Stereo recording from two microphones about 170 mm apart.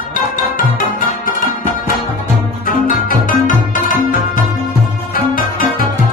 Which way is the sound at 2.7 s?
55° left (ahead or behind).